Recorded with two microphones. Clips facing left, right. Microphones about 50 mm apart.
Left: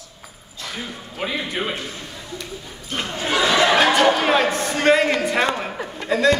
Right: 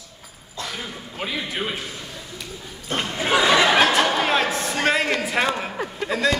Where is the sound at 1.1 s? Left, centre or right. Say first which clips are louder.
Left 3 dB; centre.